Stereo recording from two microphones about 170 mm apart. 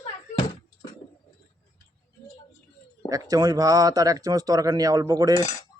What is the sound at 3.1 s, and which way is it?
Speech, 20° right (ahead or behind).